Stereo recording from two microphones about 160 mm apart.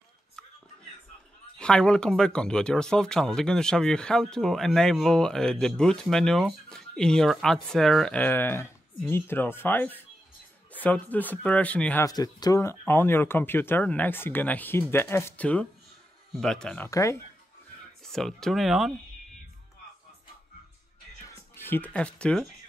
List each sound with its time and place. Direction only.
1.6 s speech: 5° left (ahead or behind)
12.1 s speech: 25° left (ahead or behind); by 16.9 s 5° left (ahead or behind)
16.9 s speech: 20° left (ahead or behind)
18.0 s speech: 5° left (ahead or behind)
21.5 s speech: 10° left (ahead or behind)